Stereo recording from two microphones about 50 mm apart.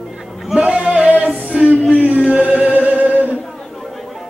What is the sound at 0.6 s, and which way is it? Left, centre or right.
Singing, right.